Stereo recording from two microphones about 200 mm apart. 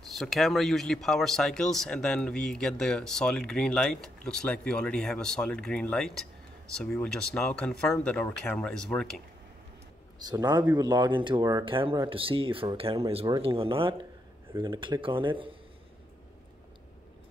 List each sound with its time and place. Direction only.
0.1 s speech: centre (ahead or behind)
10.1 s speech: 20° right (ahead or behind)